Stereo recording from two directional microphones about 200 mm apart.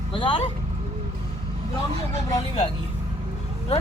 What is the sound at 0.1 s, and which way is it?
Speech, 25° left (ahead or behind).